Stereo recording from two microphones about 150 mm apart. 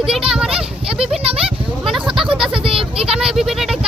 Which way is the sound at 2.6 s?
40° right (ahead or behind).